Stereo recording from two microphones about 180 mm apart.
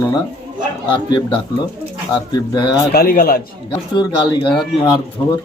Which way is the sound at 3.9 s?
25° left (ahead or behind).